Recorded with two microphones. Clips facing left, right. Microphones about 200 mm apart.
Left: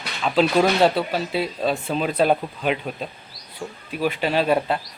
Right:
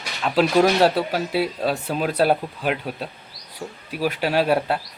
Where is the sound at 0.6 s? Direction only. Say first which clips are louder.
Right 3 dB; 10° right (ahead or behind).